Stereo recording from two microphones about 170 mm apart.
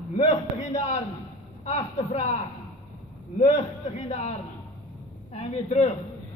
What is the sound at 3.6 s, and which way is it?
Speech, 40° left (ahead or behind).